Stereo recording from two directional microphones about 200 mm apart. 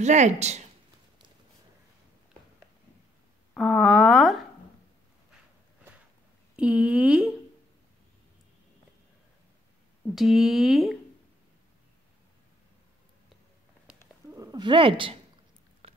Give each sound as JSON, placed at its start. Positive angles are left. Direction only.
{"t": 0.0, "sound": "speech", "side_deg": -35}
{"t": 3.5, "sound": "speech", "side_deg": 0}
{"t": 6.5, "sound": "speech", "side_deg": -5}
{"t": 10.1, "sound": "speech", "side_deg": 0}
{"t": 14.3, "sound": "speech", "side_deg": -15}
{"t": 15.8, "sound": "a sound", "side_deg": -30}